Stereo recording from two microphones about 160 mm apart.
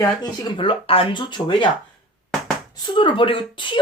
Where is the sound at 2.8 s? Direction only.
30° left (ahead or behind).